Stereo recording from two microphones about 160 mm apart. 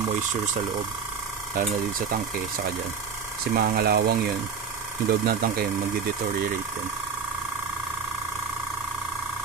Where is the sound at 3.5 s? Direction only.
70° right (ahead or behind).